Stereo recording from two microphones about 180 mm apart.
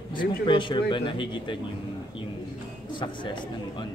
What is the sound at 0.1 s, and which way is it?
A man's voice, 25° left (ahead or behind).